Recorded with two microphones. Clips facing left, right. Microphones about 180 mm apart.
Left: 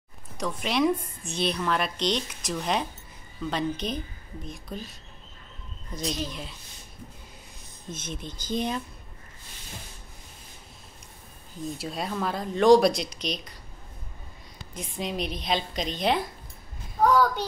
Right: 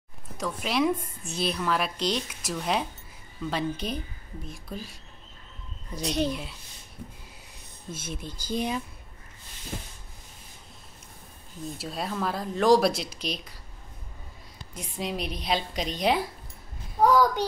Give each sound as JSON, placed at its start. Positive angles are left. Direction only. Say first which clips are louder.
{"t": 0.4, "sound": "a woman's voice", "louder": "left 1 dB", "side_deg": 0}
{"t": 6.0, "sound": "a woman's voice", "louder": "right 5 dB", "side_deg": -65}
{"t": 7.9, "sound": "a woman's voice", "louder": "even", "side_deg": -10}
{"t": 11.8, "sound": "a woman's voice", "louder": "even", "side_deg": 0}
{"t": 14.7, "sound": "a woman's voice", "louder": "even", "side_deg": -5}